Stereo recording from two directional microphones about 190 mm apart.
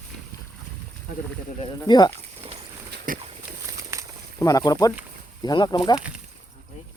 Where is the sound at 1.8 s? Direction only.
20° left (ahead or behind).